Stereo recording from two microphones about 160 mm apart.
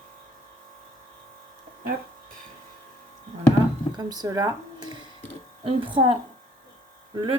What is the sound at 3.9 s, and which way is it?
Speech, 25° right (ahead or behind).